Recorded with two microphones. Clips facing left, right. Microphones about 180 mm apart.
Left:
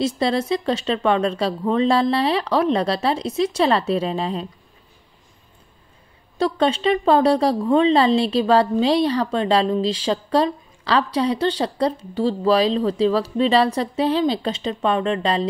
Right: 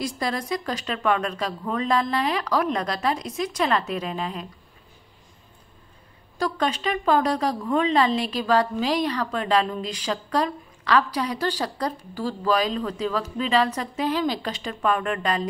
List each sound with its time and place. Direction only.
0.0 s speech: 25° left (ahead or behind)
6.3 s speech: 25° left (ahead or behind)